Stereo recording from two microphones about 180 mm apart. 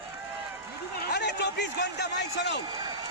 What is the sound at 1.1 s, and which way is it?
A man's voice, 70° left (ahead or behind).